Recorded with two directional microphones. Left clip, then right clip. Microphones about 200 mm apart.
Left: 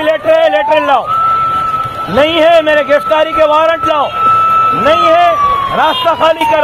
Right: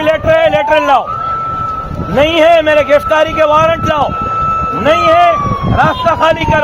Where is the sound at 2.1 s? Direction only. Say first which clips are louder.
Even; 15° right (ahead or behind).